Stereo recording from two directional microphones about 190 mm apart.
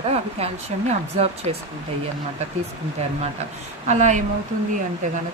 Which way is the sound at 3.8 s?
40° right (ahead or behind).